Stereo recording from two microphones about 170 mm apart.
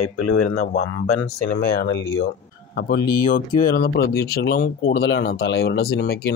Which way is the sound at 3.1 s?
60° left (ahead or behind).